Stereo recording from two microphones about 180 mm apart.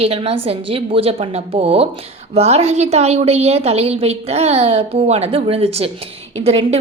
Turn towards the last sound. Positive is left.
turn(degrees=-35)  # may be behind; listen again after turning